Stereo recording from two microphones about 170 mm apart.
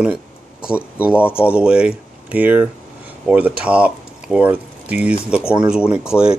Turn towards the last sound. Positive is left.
turn(degrees=-5)  # may be behind; listen again after turning